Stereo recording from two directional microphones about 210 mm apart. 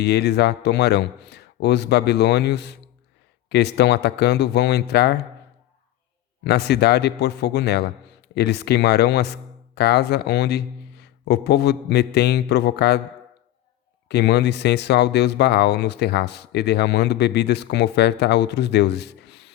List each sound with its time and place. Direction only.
0.0 s speech: 50° left (ahead or behind)
6.4 s speech: 50° left (ahead or behind)
14.1 s speech: 50° left (ahead or behind)